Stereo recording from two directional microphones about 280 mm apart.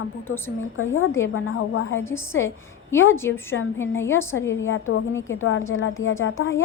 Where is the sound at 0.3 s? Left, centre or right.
Centre.